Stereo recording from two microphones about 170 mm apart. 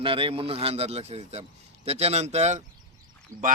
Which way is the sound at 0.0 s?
30° right (ahead or behind).